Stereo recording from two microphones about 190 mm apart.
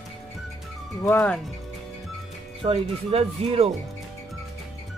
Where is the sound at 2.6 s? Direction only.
30° right (ahead or behind).